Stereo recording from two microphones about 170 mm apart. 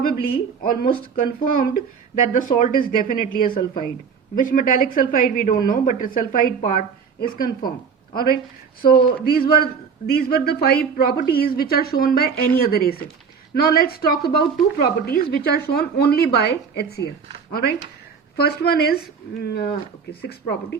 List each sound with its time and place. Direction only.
0.6 s a woman's voice: 60° left (ahead or behind)